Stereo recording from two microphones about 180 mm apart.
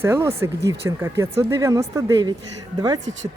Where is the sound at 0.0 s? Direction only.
15° right (ahead or behind).